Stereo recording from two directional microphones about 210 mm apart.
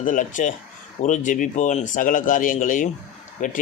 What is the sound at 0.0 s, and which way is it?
Speech, 40° left (ahead or behind).